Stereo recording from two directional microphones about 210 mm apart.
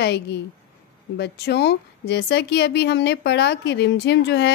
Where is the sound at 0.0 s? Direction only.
55° left (ahead or behind).